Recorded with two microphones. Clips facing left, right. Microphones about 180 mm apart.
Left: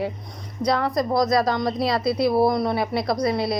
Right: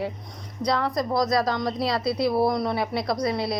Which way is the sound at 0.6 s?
30° left (ahead or behind).